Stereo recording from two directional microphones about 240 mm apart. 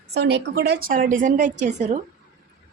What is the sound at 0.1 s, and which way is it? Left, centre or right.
A woman's voice, right.